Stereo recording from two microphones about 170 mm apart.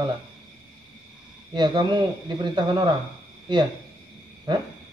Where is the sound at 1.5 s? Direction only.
25° right (ahead or behind).